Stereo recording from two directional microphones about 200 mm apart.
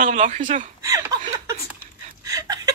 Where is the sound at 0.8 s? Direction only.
15° right (ahead or behind).